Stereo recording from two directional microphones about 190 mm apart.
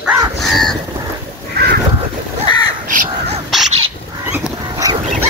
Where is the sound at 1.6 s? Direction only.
55° right (ahead or behind).